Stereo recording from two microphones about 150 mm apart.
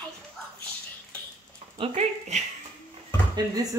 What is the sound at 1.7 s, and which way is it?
Speech, 50° right (ahead or behind).